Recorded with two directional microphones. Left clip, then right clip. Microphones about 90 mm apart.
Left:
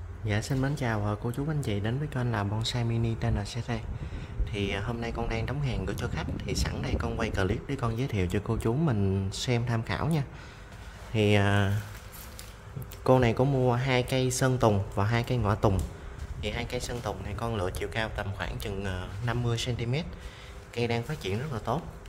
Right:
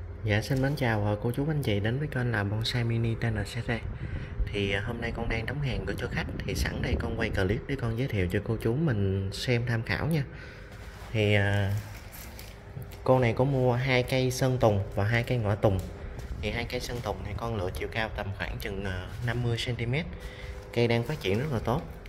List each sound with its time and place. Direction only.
0.3 s speech: 15° left (ahead or behind)
4.5 s speech: 30° left (ahead or behind)
11.1 s speech: 60° left (ahead or behind)
13.2 s speech: 45° left (ahead or behind)
13.7 s speech: 30° left (ahead or behind)
17.5 s speech: 55° left (ahead or behind); by 21.8 s 25° left (ahead or behind)